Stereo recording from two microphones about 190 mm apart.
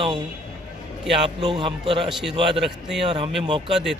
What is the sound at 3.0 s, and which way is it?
Speech, 30° right (ahead or behind).